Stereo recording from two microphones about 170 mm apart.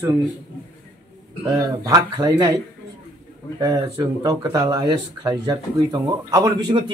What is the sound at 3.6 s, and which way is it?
Speech, 25° right (ahead or behind).